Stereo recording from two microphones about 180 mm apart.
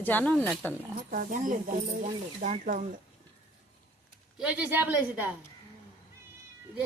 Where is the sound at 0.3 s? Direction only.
Centre (ahead or behind).